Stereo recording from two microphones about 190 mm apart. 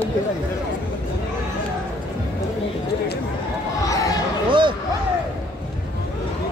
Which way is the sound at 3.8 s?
20° left (ahead or behind).